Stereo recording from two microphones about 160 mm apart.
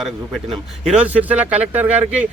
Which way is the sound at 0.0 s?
Centre (ahead or behind).